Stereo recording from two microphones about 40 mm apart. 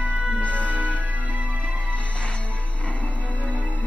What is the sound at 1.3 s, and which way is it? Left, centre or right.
Music, right.